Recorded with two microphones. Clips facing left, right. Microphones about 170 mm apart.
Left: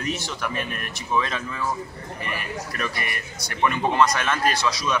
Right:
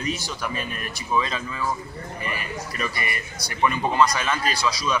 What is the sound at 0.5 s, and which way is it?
Speech, 60° left (ahead or behind).